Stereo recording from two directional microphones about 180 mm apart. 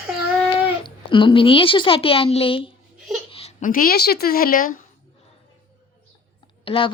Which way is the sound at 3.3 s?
35° left (ahead or behind).